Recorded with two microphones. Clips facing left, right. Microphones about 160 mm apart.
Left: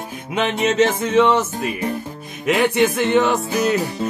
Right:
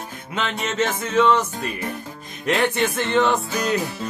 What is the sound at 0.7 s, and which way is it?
Music, 15° left (ahead or behind).